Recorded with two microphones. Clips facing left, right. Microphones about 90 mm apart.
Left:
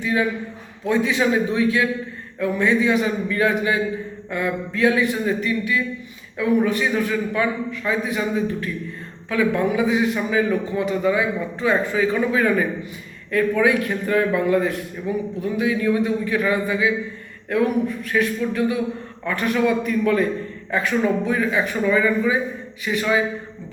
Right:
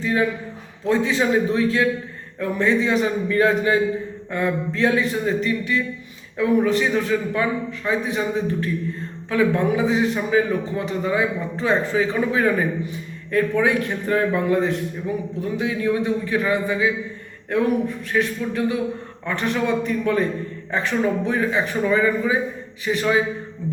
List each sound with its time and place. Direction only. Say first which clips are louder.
0.0 s a man's voice: even; 35° right (ahead or behind)